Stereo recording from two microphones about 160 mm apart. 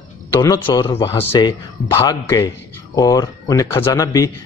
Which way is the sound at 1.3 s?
25° left (ahead or behind).